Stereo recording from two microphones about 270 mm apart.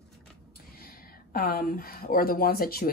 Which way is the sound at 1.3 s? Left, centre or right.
Left.